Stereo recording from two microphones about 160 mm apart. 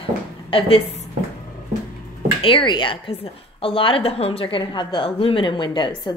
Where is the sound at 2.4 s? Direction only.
35° left (ahead or behind).